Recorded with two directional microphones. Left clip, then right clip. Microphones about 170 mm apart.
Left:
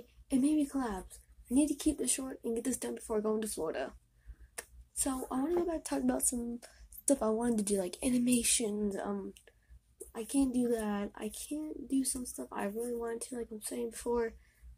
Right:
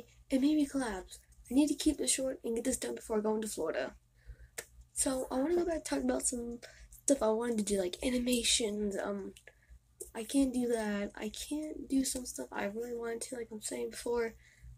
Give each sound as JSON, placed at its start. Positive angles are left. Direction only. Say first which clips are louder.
{"t": 0.3, "sound": "speech", "louder": "even", "side_deg": 30}